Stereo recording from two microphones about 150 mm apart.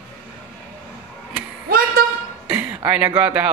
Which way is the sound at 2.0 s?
75° right (ahead or behind).